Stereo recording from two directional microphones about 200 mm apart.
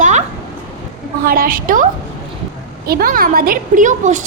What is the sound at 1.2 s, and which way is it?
A woman's voice, 45° right (ahead or behind).